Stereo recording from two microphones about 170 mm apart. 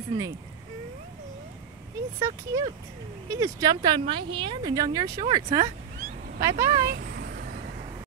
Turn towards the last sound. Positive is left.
turn(degrees=-65)  # may be behind; listen again after turning